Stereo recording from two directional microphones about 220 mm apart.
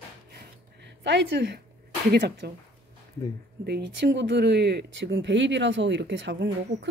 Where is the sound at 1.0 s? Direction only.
55° right (ahead or behind).